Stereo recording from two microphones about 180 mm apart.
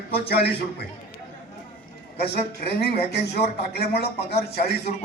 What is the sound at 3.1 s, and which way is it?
Speech, 65° left (ahead or behind).